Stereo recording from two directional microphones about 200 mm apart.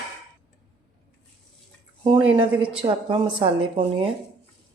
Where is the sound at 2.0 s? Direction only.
25° right (ahead or behind).